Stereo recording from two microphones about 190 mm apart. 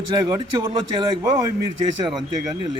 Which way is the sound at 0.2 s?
20° right (ahead or behind).